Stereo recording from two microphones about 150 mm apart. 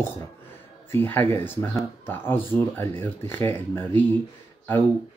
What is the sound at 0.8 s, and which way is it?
Speech, 15° left (ahead or behind).